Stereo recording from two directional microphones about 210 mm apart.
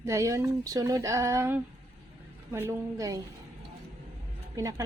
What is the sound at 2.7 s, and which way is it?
Speech, 15° right (ahead or behind).